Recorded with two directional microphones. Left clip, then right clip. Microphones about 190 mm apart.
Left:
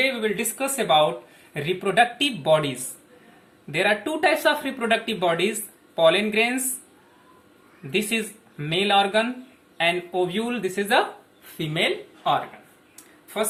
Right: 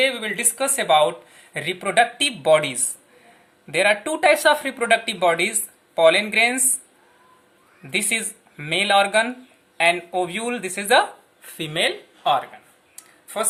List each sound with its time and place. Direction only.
0.0 s speech: 50° right (ahead or behind)
7.9 s speech: 50° right (ahead or behind)
13.2 s a sound: 45° right (ahead or behind)